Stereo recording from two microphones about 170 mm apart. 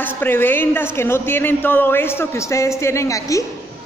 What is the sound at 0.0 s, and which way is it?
Speech, 10° left (ahead or behind).